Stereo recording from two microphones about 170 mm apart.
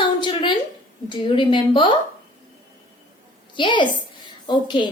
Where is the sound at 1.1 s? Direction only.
30° left (ahead or behind).